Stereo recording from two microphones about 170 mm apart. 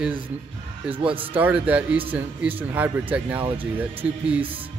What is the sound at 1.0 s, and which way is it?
Speech, 30° right (ahead or behind).